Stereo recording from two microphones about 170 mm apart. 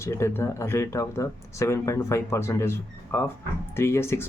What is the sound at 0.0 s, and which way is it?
A man's voice, 15° left (ahead or behind).